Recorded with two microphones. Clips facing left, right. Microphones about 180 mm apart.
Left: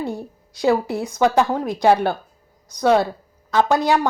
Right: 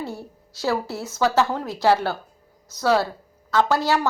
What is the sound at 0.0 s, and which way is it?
A woman's voice, 15° left (ahead or behind).